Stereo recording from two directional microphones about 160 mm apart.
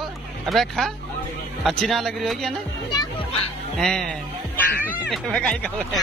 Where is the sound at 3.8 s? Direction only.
5° left (ahead or behind).